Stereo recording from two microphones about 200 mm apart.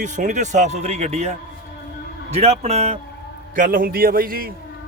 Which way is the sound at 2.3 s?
30° right (ahead or behind).